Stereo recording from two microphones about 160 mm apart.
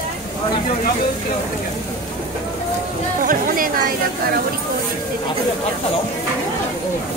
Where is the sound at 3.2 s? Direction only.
60° right (ahead or behind).